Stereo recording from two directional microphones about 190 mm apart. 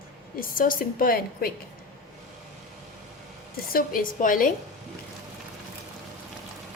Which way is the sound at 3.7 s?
50° left (ahead or behind).